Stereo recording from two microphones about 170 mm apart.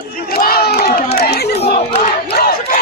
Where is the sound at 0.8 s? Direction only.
70° left (ahead or behind).